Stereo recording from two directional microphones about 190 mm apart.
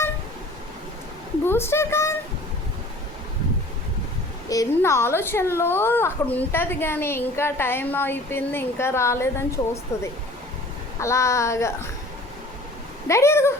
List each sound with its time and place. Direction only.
1.5 s a child's voice: 10° left (ahead or behind)
4.4 s a child's voice: 15° left (ahead or behind)
13.1 s a child's voice: 15° left (ahead or behind)